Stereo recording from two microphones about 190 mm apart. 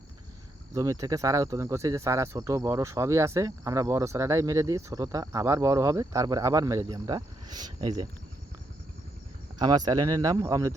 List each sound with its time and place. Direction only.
0.7 s speech: 15° right (ahead or behind)
9.6 s speech: 20° right (ahead or behind)